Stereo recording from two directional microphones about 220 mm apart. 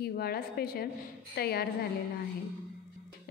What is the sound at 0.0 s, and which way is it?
A woman's voice, 45° left (ahead or behind).